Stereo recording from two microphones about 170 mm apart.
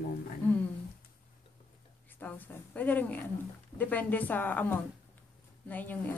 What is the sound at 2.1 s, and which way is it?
A woman's voice, 10° left (ahead or behind).